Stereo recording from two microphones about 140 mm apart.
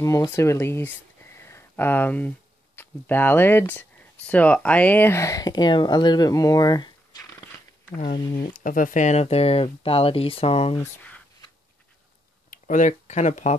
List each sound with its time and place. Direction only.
0.0 s speech: 25° left (ahead or behind)
7.9 s speech: 75° left (ahead or behind); by 10.8 s 45° left (ahead or behind)
12.4 s speech: 65° left (ahead or behind)